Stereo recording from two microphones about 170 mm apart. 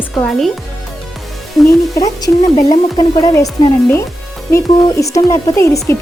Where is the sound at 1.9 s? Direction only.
20° left (ahead or behind).